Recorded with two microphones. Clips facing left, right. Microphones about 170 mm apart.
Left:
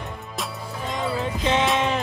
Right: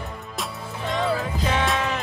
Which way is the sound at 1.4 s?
20° left (ahead or behind).